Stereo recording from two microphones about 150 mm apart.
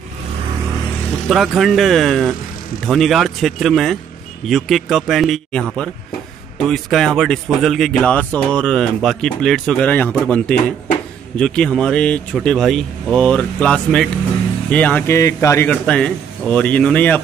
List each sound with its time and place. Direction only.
1.3 s speech: centre (ahead or behind); by 15.7 s 20° left (ahead or behind)
15.7 s speech: 5° left (ahead or behind)